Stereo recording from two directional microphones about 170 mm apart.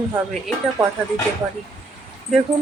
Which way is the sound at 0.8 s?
20° right (ahead or behind).